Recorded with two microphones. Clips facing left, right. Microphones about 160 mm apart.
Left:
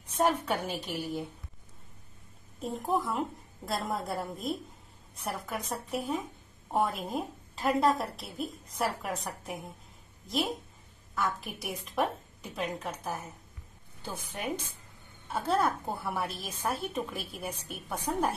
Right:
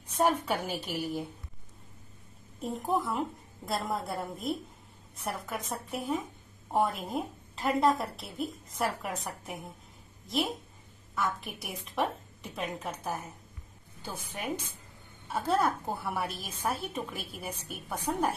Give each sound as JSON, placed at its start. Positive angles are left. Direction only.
{"t": 0.2, "sound": "a woman's voice", "side_deg": -10}
{"t": 2.6, "sound": "a woman's voice", "side_deg": 0}
{"t": 11.1, "sound": "a woman's voice", "side_deg": 0}
{"t": 15.4, "sound": "a woman's voice", "side_deg": 5}